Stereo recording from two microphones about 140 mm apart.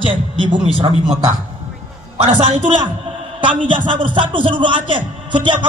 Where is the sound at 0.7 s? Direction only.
40° right (ahead or behind).